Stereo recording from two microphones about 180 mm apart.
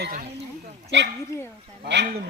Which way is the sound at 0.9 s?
90° right.